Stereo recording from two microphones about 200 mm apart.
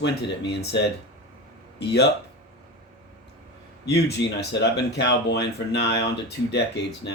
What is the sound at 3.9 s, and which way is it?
Speech, 55° left (ahead or behind).